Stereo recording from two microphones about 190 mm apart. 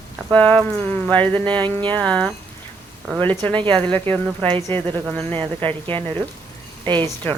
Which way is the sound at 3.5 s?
25° right (ahead or behind).